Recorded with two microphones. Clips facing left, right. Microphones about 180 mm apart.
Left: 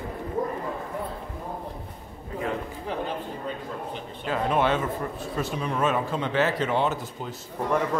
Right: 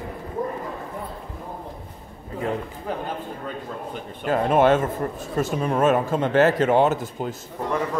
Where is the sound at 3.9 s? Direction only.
50° right (ahead or behind).